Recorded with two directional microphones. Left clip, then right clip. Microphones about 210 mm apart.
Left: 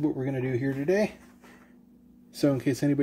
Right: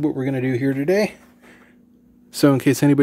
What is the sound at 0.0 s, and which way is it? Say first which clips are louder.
Speech: right 7 dB; 40° right (ahead or behind).